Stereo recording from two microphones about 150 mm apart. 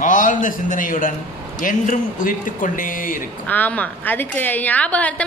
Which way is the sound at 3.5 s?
10° left (ahead or behind).